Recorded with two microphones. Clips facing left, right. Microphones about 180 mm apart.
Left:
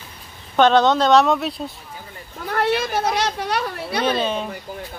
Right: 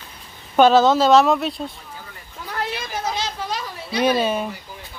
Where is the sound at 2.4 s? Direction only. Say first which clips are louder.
Left 8 dB; 60° left (ahead or behind).